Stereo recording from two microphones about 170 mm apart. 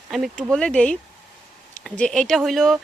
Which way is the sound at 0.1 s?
Centre (ahead or behind).